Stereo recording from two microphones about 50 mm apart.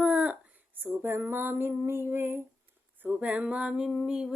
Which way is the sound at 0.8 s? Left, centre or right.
Right.